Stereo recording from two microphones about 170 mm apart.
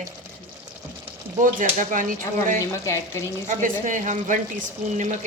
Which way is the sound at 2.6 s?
15° left (ahead or behind).